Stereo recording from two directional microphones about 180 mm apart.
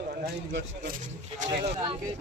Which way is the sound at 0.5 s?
70° right (ahead or behind).